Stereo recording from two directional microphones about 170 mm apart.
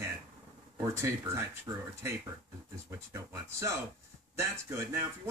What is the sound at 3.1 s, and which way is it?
A man's voice, 15° right (ahead or behind).